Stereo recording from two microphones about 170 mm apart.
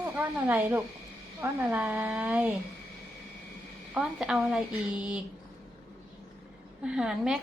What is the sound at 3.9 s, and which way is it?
A woman's voice, 5° right (ahead or behind).